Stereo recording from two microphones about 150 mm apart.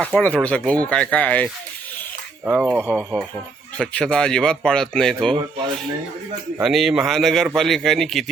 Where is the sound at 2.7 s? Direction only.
10° left (ahead or behind).